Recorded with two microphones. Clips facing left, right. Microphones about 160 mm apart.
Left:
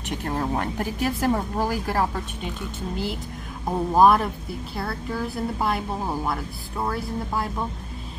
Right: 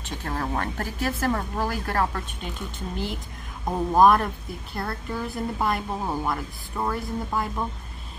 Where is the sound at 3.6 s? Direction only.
5° left (ahead or behind).